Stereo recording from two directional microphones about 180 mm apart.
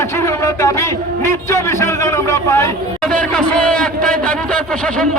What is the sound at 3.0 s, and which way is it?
A man's voice, 5° left (ahead or behind).